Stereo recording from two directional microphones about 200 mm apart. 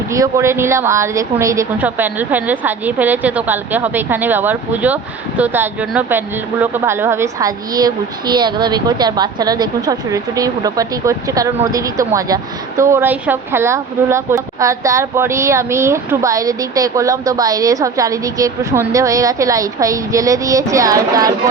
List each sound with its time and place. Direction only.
0.1 s speech: 15° right (ahead or behind)